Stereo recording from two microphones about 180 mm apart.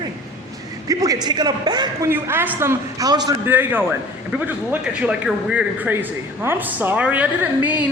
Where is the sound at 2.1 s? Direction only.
10° right (ahead or behind).